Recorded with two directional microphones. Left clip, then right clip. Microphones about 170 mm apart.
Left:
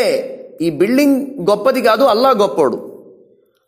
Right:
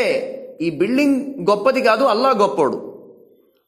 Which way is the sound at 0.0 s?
10° left (ahead or behind).